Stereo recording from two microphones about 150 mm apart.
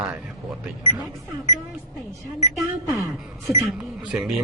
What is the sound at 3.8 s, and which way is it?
Speech, 5° right (ahead or behind).